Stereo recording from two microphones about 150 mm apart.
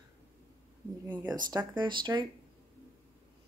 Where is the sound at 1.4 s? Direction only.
30° right (ahead or behind).